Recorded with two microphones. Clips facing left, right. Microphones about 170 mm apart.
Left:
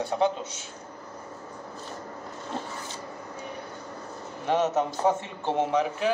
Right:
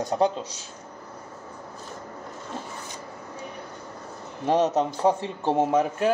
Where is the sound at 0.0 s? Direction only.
35° right (ahead or behind).